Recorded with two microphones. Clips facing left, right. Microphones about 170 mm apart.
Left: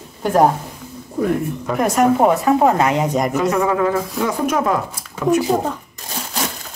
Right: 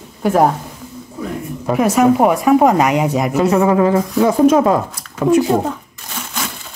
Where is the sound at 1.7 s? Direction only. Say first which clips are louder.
Right 3 dB; 5° right (ahead or behind).